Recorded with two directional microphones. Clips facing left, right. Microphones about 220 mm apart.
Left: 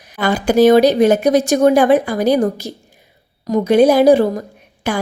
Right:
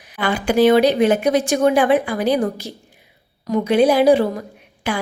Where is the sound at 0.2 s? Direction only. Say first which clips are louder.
Left 4 dB; 40° left (ahead or behind).